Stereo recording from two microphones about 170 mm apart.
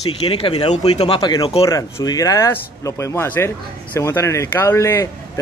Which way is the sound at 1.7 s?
20° left (ahead or behind).